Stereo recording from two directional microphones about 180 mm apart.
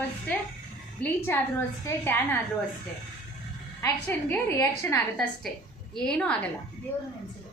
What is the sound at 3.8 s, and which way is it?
A woman's voice, 10° left (ahead or behind).